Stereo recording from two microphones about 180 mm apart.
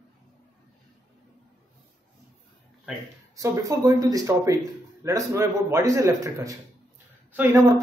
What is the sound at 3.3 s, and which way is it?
Speech, 20° right (ahead or behind).